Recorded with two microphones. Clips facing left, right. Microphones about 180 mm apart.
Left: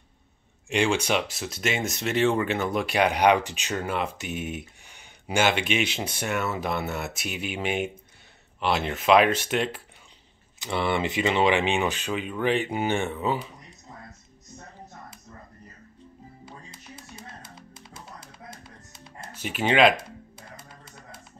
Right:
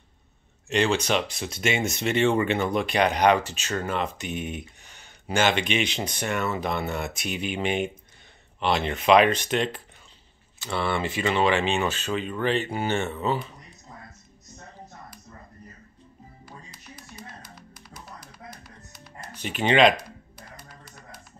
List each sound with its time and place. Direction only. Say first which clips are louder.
0.7 s speech: right 1 dB; 10° left (ahead or behind)
10.6 s speech: left 1 dB; 20° left (ahead or behind)
16.4 s music: even; 25° left (ahead or behind)
19.3 s speech: right 1 dB; 5° left (ahead or behind)
20.0 s music: left 1 dB; 25° left (ahead or behind)